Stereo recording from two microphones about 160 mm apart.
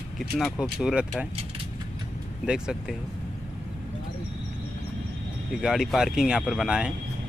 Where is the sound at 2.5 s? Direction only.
5° right (ahead or behind).